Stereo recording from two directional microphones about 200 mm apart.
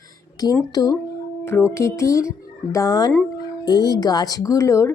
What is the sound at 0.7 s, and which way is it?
Speech, 20° left (ahead or behind).